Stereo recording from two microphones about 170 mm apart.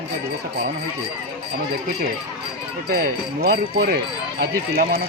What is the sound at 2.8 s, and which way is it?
Speech, 60° right (ahead or behind).